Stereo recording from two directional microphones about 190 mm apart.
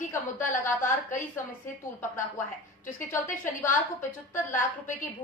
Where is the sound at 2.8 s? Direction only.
45° left (ahead or behind).